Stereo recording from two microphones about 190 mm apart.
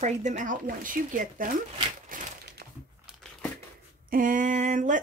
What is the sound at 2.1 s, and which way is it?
Crumpling, 45° right (ahead or behind).